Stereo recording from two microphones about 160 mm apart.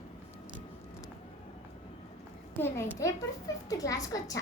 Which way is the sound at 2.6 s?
15° left (ahead or behind).